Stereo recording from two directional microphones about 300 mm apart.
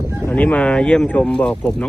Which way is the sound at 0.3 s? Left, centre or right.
Centre.